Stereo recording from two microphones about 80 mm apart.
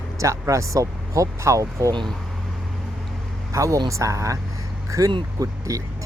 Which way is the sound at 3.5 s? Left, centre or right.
Right.